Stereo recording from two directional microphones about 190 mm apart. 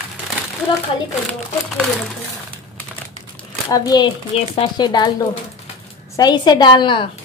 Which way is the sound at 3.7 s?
20° left (ahead or behind).